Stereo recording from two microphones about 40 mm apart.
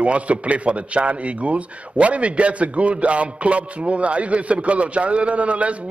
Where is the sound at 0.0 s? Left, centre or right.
Right.